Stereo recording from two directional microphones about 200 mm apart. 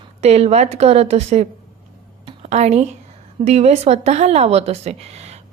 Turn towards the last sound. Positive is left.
turn(degrees=-30)  # may be behind; listen again after turning